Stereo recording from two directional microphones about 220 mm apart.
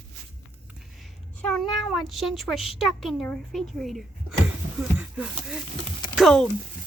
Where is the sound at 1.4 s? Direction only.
Centre (ahead or behind).